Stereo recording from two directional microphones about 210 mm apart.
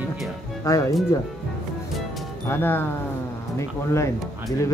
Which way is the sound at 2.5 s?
10° left (ahead or behind).